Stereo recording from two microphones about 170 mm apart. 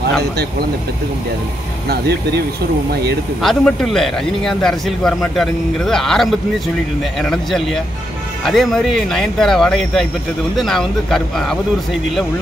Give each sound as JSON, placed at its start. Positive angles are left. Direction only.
{"t": 1.9, "sound": "speech", "side_deg": -75}
{"t": 3.3, "sound": "a man's voice", "side_deg": 0}